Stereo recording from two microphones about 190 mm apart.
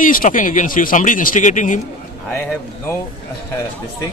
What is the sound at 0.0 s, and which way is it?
Speech, 45° left (ahead or behind).